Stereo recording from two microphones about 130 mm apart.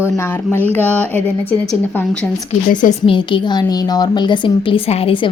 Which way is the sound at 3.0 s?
40° left (ahead or behind).